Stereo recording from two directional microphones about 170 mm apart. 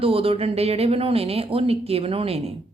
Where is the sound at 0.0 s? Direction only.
35° right (ahead or behind).